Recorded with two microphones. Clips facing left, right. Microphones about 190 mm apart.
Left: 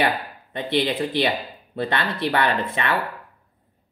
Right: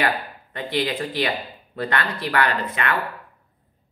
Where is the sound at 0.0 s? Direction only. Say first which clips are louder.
Left 1 dB; 20° left (ahead or behind).